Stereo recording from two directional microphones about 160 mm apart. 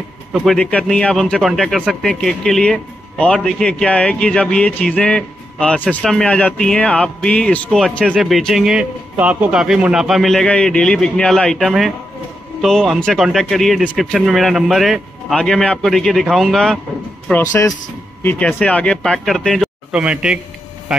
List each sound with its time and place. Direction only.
0.3 s speech: 5° left (ahead or behind)
17.3 s speech: 20° left (ahead or behind); by 20.3 s 5° right (ahead or behind)